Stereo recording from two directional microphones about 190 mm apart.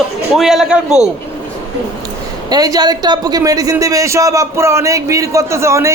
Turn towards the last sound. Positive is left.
turn(degrees=-15)  # may be behind; listen again after turning